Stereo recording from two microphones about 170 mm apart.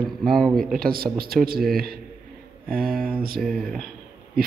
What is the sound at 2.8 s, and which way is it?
Speech, 60° right (ahead or behind).